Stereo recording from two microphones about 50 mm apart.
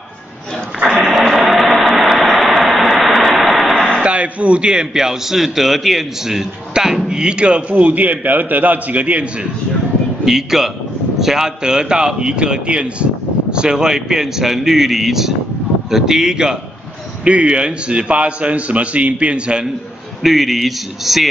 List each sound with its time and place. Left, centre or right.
0.8 s a sound: centre
2.0 s vehicle: centre
4.0 s a man's voice: right
7.7 s a man's voice: right
10.2 s a man's voice: centre
20.2 s speech: centre